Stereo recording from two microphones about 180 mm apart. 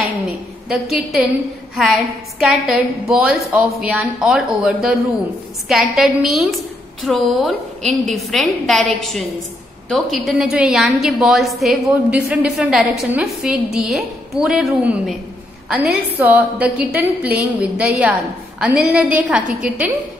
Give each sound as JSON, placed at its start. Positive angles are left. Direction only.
{"t": 0.7, "sound": "a woman's voice", "side_deg": 0}